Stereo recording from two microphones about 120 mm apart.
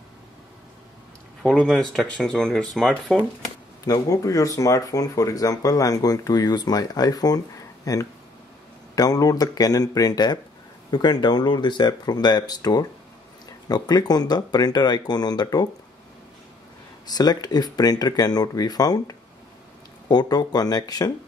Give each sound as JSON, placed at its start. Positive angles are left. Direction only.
{"t": 1.4, "sound": "speech", "side_deg": 5}
{"t": 3.8, "sound": "speech", "side_deg": 30}
{"t": 17.0, "sound": "speech", "side_deg": 35}